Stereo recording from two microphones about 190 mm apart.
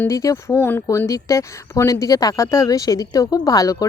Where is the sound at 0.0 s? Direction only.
15° left (ahead or behind).